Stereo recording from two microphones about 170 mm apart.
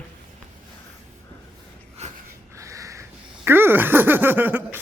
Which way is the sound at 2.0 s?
40° right (ahead or behind).